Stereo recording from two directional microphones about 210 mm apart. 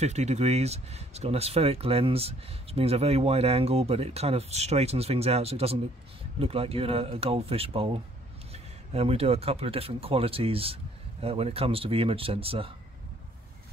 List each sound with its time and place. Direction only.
0.0 s speech: 30° right (ahead or behind)